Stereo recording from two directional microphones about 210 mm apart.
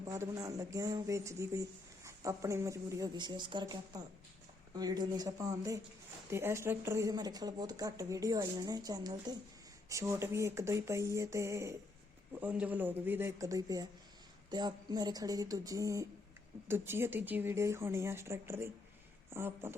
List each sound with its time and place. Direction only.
0.0 s a woman's voice: 15° right (ahead or behind)